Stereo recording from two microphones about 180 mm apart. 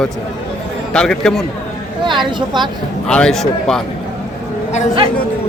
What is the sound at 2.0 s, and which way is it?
Speech, 25° right (ahead or behind).